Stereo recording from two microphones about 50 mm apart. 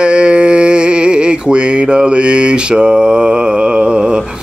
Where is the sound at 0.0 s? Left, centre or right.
Right.